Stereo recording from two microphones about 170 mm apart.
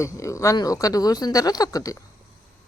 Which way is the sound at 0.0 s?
15° left (ahead or behind).